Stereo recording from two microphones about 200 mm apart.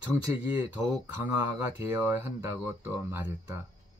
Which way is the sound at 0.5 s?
10° right (ahead or behind).